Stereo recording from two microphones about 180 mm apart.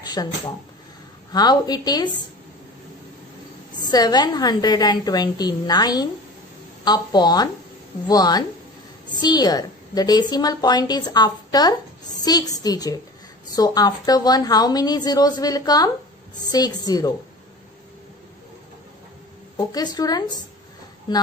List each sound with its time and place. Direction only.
0.0 s a sound: 20° left (ahead or behind)
1.3 s a woman's voice: 20° left (ahead or behind)
3.9 s a woman's voice: 20° left (ahead or behind)
19.5 s a woman's voice: 20° left (ahead or behind)